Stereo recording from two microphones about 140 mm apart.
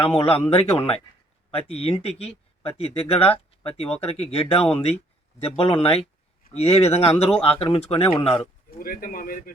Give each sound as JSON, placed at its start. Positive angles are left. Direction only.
{"t": 0.5, "sound": "speech", "side_deg": 40}
{"t": 8.8, "sound": "speech", "side_deg": 90}